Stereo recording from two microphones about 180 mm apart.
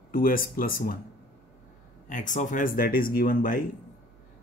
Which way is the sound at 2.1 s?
45° left (ahead or behind).